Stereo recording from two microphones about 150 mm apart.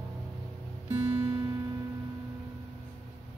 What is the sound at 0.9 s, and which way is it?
Music, 25° right (ahead or behind).